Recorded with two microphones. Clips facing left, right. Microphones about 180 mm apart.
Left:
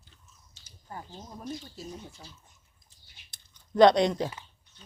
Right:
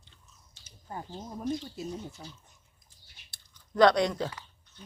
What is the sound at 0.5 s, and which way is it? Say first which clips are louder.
Speech: right 2 dB; 20° right (ahead or behind).